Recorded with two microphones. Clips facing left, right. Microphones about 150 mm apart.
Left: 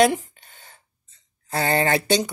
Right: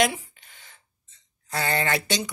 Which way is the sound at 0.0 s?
35° left (ahead or behind).